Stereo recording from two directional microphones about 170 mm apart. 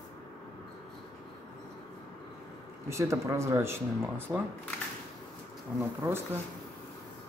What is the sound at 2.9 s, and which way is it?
Speech, 15° right (ahead or behind).